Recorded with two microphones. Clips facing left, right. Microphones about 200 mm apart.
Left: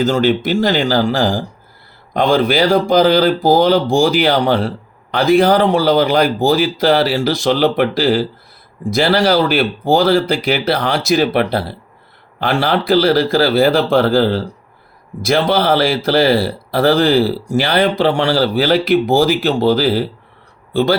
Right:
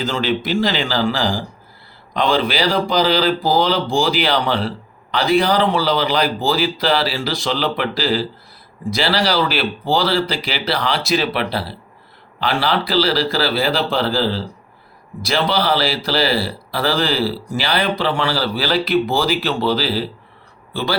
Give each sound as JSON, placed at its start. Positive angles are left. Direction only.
{"t": 0.0, "sound": "speech", "side_deg": 45}